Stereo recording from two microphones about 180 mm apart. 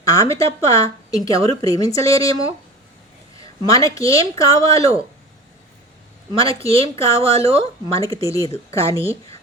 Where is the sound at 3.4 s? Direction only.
20° left (ahead or behind).